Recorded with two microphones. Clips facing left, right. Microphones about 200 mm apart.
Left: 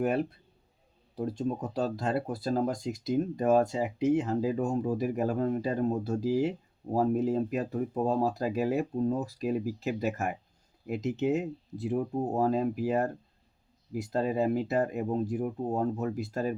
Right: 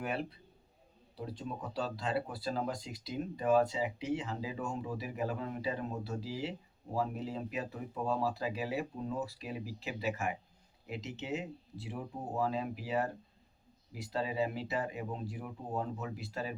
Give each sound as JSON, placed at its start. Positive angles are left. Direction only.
{"t": 0.0, "sound": "speech", "side_deg": 45}